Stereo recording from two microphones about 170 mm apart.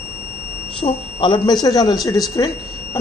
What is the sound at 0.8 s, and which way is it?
A man's voice, 25° left (ahead or behind).